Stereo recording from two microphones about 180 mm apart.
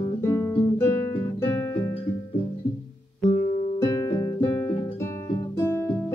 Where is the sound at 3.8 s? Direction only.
20° left (ahead or behind).